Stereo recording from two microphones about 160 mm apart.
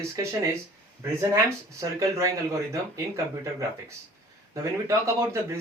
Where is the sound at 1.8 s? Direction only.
20° right (ahead or behind).